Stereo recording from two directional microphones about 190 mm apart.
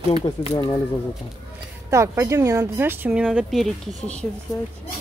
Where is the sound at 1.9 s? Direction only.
15° right (ahead or behind); by 4.2 s 5° left (ahead or behind).